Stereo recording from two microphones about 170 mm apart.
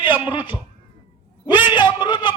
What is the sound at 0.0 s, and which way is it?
Speech, 30° left (ahead or behind).